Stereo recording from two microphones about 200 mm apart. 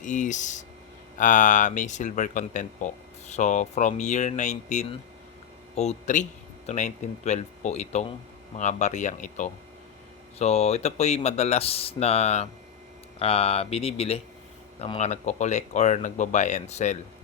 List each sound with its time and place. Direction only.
0.0 s speech: 40° left (ahead or behind)